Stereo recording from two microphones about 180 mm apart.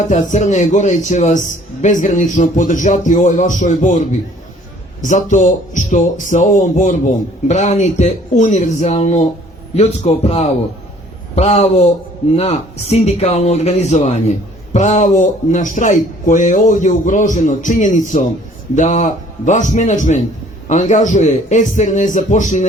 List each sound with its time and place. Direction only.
0.1 s speech: 45° left (ahead or behind)
5.0 s speech: 40° left (ahead or behind)